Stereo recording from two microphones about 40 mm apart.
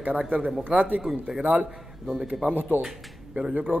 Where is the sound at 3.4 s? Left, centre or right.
Right.